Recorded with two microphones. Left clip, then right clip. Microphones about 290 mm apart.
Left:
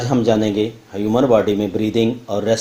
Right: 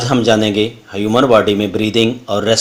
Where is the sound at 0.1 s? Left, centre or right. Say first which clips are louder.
Right 4 dB; right.